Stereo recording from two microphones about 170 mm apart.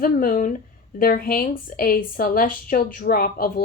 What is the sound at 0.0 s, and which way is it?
A woman's voice, 55° left (ahead or behind).